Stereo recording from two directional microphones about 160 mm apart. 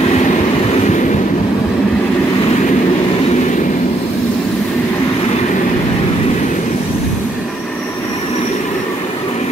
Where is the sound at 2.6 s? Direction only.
45° left (ahead or behind).